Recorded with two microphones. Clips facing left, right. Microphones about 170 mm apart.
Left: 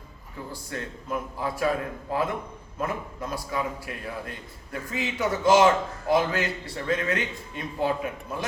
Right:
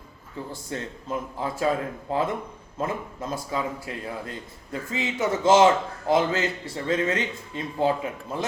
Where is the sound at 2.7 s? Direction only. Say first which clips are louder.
Right 1 dB; 25° right (ahead or behind).